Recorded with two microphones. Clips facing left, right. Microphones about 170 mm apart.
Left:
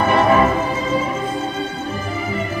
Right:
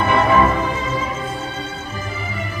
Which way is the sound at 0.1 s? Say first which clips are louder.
Even; 40° left (ahead or behind).